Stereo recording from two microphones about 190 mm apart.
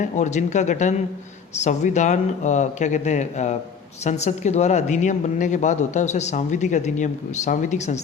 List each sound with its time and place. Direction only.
0.0 s a woman's voice: 40° left (ahead or behind)